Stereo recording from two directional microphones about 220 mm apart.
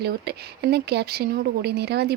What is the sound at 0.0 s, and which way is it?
Speech, 45° right (ahead or behind).